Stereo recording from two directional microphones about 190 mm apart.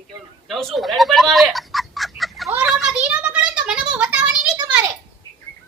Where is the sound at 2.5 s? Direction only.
5° right (ahead or behind).